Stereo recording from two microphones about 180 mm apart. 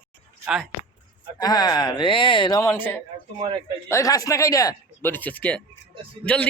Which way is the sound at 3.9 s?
20° left (ahead or behind).